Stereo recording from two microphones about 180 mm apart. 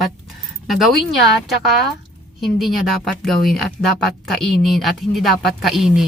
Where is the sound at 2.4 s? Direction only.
Centre (ahead or behind).